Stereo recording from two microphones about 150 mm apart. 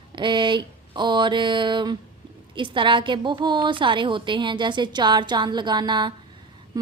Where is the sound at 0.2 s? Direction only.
30° right (ahead or behind).